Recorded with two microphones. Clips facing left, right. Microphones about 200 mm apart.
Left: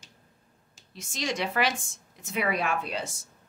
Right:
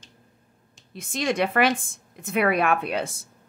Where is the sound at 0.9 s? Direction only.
55° right (ahead or behind).